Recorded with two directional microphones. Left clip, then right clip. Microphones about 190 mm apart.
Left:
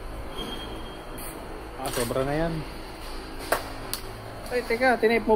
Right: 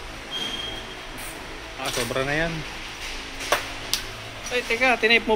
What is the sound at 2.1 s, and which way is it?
Speech, 5° left (ahead or behind).